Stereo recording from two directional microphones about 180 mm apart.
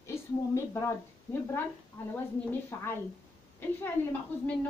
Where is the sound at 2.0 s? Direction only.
10° left (ahead or behind).